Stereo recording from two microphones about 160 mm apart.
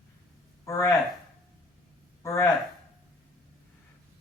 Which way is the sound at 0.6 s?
20° left (ahead or behind).